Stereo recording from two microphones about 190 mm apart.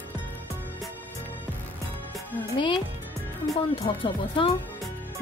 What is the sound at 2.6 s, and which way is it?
Speech, 25° left (ahead or behind).